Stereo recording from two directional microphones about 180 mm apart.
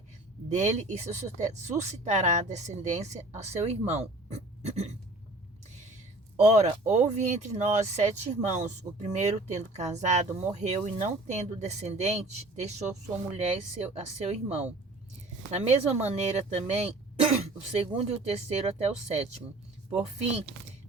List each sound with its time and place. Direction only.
0.5 s speech: 40° right (ahead or behind)
6.3 s speech: 40° right (ahead or behind)